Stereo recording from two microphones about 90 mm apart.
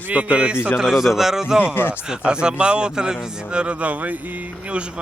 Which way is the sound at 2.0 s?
10° right (ahead or behind).